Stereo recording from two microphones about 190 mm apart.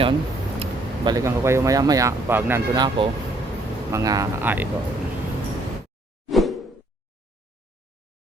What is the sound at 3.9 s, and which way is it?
Speech, 15° right (ahead or behind).